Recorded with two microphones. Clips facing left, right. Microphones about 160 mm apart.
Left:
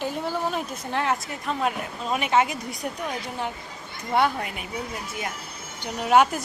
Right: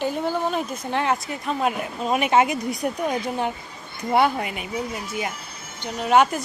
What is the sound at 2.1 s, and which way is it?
Speech, 15° right (ahead or behind).